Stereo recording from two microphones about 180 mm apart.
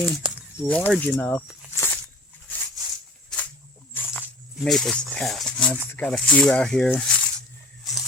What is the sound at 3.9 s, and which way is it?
Snake, 10° left (ahead or behind).